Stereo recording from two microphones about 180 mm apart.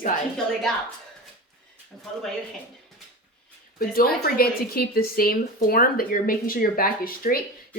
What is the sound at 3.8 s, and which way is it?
Speech, 55° left (ahead or behind).